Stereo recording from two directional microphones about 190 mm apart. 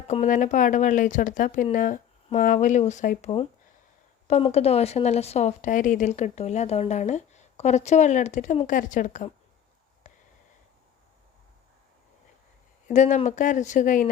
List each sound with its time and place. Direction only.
0.1 s a woman's voice: 40° left (ahead or behind)
10.0 s a sound: 40° left (ahead or behind)
12.9 s a woman's voice: 40° left (ahead or behind)